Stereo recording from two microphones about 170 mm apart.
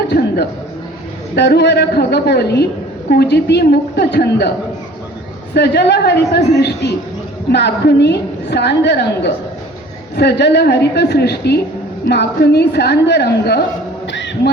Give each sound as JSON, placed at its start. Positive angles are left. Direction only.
{"t": 1.4, "sound": "a woman's voice", "side_deg": 80}
{"t": 5.5, "sound": "a woman's voice", "side_deg": 80}
{"t": 14.1, "sound": "a sound", "side_deg": 90}